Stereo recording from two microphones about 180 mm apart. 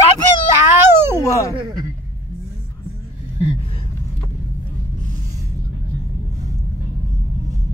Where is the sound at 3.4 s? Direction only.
35° left (ahead or behind).